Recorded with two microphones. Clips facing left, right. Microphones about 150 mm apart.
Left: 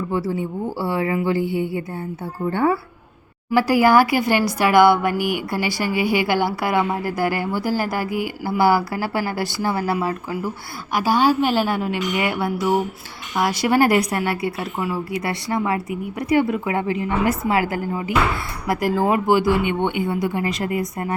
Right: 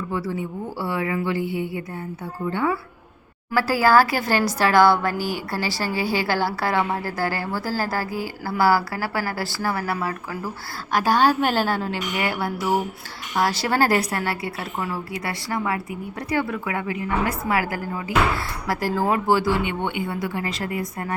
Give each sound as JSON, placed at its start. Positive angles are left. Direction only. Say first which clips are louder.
{"t": 0.1, "sound": "a woman's voice", "louder": "left 3 dB", "side_deg": 30}
{"t": 3.5, "sound": "a woman's voice", "louder": "left 3 dB", "side_deg": 20}
{"t": 10.9, "sound": "a woman's voice", "louder": "left 1 dB", "side_deg": 10}
{"t": 13.7, "sound": "a woman's voice", "louder": "left 7 dB", "side_deg": 15}